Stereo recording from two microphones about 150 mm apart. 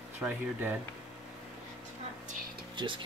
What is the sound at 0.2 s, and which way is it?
Speech, 10° right (ahead or behind).